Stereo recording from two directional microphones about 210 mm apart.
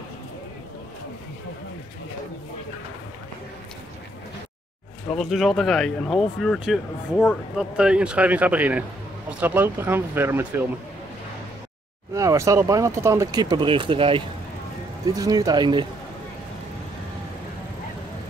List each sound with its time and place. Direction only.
5.1 s speech: centre (ahead or behind)
12.1 s speech: 15° right (ahead or behind)